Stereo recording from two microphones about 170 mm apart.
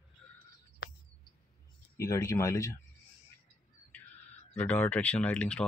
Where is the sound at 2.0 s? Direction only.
20° left (ahead or behind).